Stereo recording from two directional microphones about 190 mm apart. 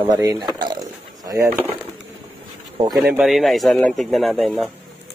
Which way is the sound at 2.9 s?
10° right (ahead or behind).